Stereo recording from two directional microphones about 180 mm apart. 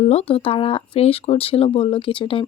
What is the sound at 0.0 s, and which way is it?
Speech, 35° left (ahead or behind).